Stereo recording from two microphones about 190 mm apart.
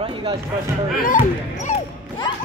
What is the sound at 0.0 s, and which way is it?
Speech, 30° right (ahead or behind).